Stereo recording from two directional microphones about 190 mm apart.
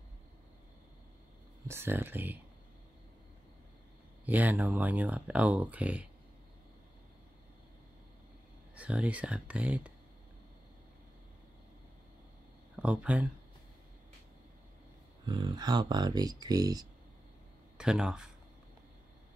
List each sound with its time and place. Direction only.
1.7 s speech: 10° right (ahead or behind)
4.3 s speech: 10° right (ahead or behind)
8.7 s speech: 5° right (ahead or behind)
12.7 s speech: 5° right (ahead or behind)
15.2 s speech: 25° right (ahead or behind)
17.7 s speech: 5° right (ahead or behind)